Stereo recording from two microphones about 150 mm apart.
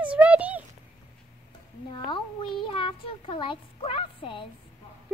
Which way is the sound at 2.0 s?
35° left (ahead or behind).